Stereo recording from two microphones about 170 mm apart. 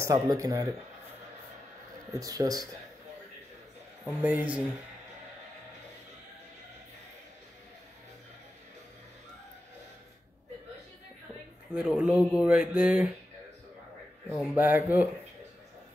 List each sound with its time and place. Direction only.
0.0 s speech: 20° right (ahead or behind)
2.1 s speech: 20° right (ahead or behind)
4.0 s speech: 10° right (ahead or behind)
11.7 s speech: 5° right (ahead or behind)
14.5 s speech: 10° right (ahead or behind)